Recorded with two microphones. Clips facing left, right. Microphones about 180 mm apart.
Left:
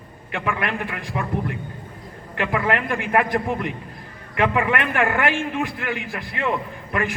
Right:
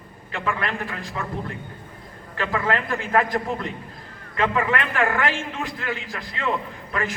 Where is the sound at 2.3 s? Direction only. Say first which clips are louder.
Left 2 dB; 15° left (ahead or behind).